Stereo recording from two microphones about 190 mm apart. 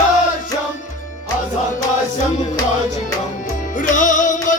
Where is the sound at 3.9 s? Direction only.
40° left (ahead or behind).